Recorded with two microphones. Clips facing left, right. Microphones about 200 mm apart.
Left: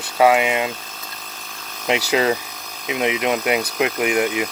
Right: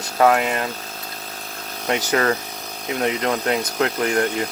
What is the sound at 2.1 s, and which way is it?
Speech, 15° left (ahead or behind).